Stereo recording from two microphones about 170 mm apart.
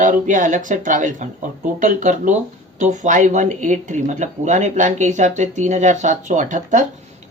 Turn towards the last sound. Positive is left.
turn(degrees=-50)  # may be behind; listen again after turning